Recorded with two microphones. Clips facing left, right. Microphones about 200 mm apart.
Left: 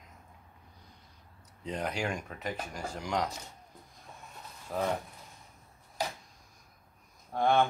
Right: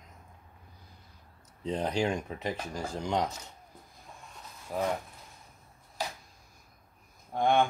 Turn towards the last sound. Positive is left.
turn(degrees=-15)  # may be behind; listen again after turning